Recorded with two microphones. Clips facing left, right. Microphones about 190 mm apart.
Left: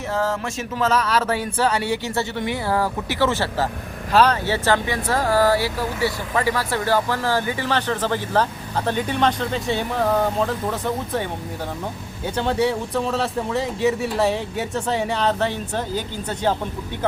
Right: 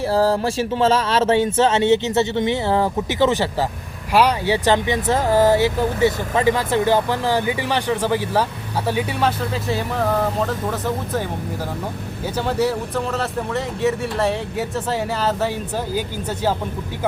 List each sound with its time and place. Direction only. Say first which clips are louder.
0.1 s speech: right 5 dB; 35° right (ahead or behind); by 16.6 s 5° right (ahead or behind)